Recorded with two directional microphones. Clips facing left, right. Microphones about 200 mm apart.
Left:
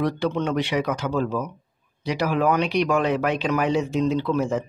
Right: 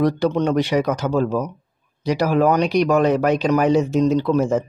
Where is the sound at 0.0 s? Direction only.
40° right (ahead or behind).